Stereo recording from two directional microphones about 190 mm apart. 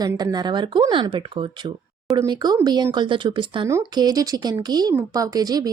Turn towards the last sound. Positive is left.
turn(degrees=-20)  # may be behind; listen again after turning